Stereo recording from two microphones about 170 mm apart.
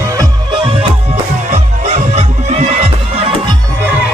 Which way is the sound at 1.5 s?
45° right (ahead or behind).